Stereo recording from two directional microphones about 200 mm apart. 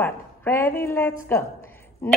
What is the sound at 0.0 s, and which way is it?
A woman's voice, 10° left (ahead or behind).